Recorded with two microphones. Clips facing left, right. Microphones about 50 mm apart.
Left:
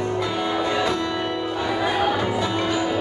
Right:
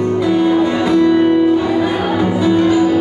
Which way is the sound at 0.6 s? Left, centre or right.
Centre.